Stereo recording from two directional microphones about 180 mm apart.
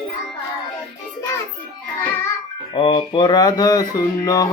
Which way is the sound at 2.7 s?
30° left (ahead or behind).